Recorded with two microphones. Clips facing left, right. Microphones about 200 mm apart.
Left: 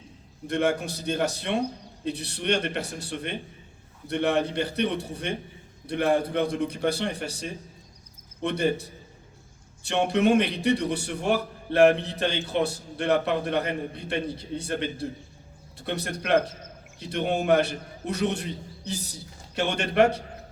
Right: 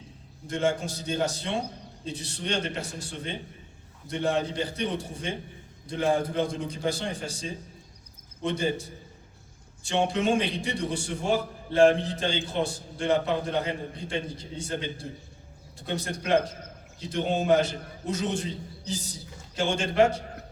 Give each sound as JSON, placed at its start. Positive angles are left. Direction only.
{"t": 0.4, "sound": "a man's voice", "side_deg": 65}